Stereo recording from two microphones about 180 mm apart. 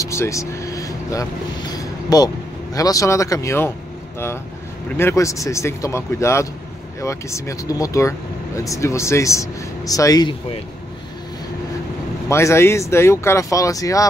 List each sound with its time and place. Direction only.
0.0 s vehicle: 15° left (ahead or behind)
1.7 s speech: 20° left (ahead or behind)
4.9 s speech: 15° left (ahead or behind)
12.3 s speech: 15° left (ahead or behind)